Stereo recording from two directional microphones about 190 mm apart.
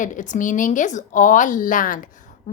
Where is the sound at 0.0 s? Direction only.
40° left (ahead or behind).